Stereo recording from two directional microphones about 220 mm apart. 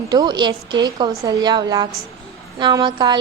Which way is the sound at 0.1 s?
20° right (ahead or behind).